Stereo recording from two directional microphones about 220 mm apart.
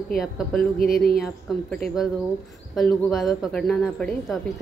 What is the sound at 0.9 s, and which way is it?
Speech, 40° left (ahead or behind).